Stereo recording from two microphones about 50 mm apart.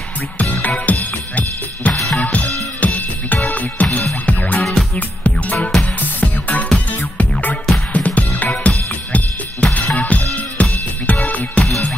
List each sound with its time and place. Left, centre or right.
0.4 s drum kit: left
2.0 s drum kit: centre
2.3 s music: left
5.6 s music: left
8.6 s drum kit: left
9.9 s music: left